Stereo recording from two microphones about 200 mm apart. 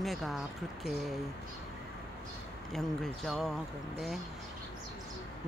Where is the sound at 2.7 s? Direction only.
Centre (ahead or behind).